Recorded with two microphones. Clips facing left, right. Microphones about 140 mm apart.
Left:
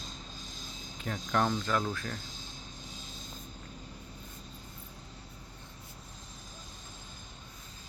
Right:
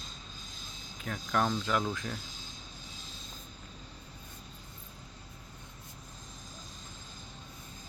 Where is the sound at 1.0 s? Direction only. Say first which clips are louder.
Left 1 dB; centre (ahead or behind).